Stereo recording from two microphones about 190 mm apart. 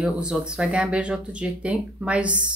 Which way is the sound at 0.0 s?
5° right (ahead or behind).